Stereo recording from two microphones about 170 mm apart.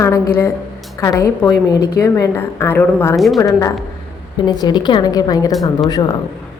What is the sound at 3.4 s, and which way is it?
A woman's voice, 20° left (ahead or behind).